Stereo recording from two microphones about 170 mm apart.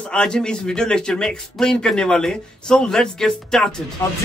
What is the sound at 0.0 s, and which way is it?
A man's voice, 5° left (ahead or behind).